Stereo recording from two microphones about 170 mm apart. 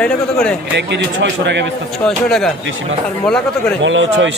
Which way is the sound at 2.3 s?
5° left (ahead or behind).